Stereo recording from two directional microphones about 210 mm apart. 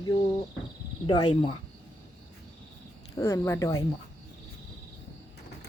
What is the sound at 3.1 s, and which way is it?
Speech, 15° left (ahead or behind).